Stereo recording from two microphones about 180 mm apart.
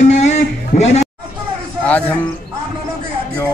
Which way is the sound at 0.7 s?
50° left (ahead or behind).